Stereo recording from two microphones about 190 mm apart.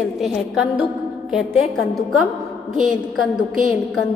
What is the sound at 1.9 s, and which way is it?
Speech, centre (ahead or behind).